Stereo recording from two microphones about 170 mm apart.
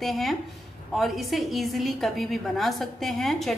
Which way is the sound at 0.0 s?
Centre (ahead or behind).